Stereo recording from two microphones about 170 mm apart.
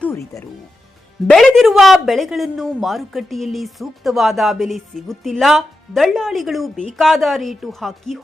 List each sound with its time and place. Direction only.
0.0 s speech: 15° left (ahead or behind)
1.3 s a woman's voice: centre (ahead or behind)